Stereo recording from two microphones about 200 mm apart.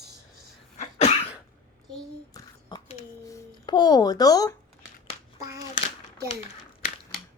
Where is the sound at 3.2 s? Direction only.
20° left (ahead or behind).